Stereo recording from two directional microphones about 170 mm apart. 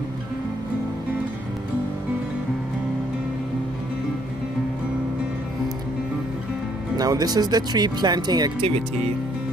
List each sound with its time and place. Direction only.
7.0 s speech: 25° right (ahead or behind)